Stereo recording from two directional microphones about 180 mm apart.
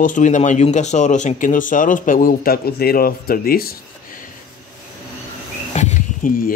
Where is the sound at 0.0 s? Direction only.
45° left (ahead or behind).